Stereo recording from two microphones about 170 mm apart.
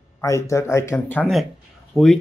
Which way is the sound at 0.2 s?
15° left (ahead or behind).